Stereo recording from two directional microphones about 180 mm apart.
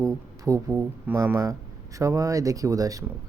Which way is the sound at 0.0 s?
15° right (ahead or behind).